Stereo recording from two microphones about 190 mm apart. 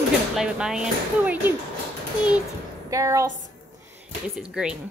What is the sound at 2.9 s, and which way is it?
Speech, 15° right (ahead or behind).